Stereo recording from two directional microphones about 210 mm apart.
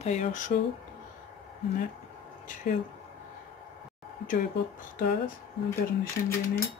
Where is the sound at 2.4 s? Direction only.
40° left (ahead or behind).